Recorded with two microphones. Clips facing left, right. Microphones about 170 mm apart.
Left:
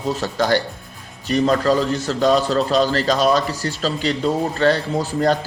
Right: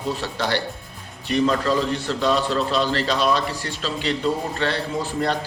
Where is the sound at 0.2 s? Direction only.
45° left (ahead or behind).